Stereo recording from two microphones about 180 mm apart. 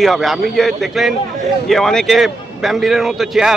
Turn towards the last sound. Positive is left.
turn(degrees=0)  # may be behind; listen again after turning